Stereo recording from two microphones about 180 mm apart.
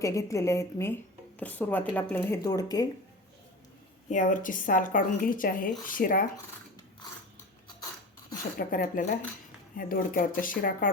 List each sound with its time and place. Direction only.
0.0 s speech: 15° left (ahead or behind)
4.1 s speech: 45° left (ahead or behind)
8.5 s speech: 50° left (ahead or behind)